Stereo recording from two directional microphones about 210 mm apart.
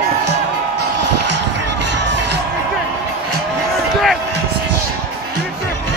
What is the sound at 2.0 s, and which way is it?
Music, 55° right (ahead or behind).